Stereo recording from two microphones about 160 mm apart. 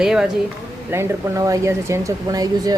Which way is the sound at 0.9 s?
15° right (ahead or behind).